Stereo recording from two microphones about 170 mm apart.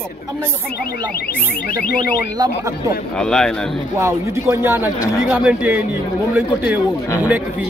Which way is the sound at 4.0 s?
15° right (ahead or behind).